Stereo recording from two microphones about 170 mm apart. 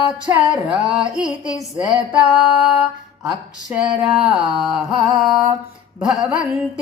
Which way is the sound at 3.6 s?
5° right (ahead or behind).